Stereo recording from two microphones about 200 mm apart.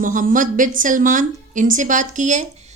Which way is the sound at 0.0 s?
40° right (ahead or behind).